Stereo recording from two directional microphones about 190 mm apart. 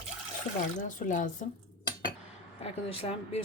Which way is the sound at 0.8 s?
40° left (ahead or behind).